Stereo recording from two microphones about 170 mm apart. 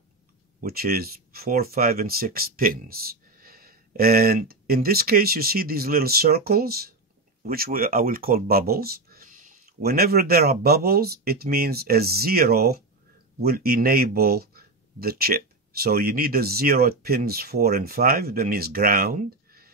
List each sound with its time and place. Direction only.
0.6 s speech: 60° right (ahead or behind)